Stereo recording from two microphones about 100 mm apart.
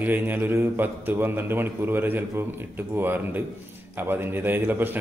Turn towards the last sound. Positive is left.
turn(degrees=-20)  # may be behind; listen again after turning